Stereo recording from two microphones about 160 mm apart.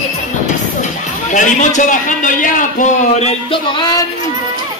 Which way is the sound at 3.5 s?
30° left (ahead or behind).